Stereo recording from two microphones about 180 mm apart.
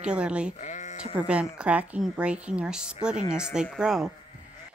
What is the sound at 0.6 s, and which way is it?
Sheep, 40° left (ahead or behind).